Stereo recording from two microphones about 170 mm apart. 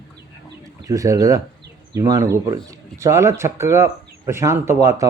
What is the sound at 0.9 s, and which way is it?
Speech, 20° right (ahead or behind).